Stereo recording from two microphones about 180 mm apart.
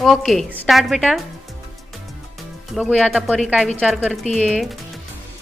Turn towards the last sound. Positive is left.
turn(degrees=0)  # may be behind; listen again after turning